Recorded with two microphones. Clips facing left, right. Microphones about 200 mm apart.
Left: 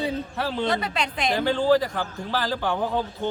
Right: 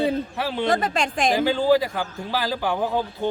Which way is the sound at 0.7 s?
45° right (ahead or behind).